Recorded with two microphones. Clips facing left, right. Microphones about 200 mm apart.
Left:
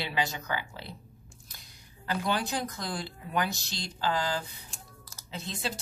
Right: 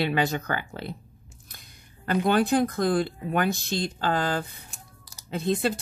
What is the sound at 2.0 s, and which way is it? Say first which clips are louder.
Speech: right 8 dB; 55° right (ahead or behind).